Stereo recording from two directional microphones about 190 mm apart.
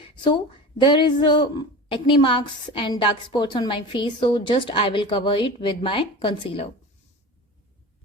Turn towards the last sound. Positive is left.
turn(degrees=30)  # may be behind; listen again after turning